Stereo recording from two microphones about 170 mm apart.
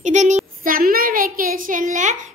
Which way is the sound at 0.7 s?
55° right (ahead or behind).